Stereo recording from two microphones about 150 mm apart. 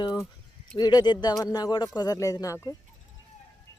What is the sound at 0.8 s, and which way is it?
Speech, 30° left (ahead or behind).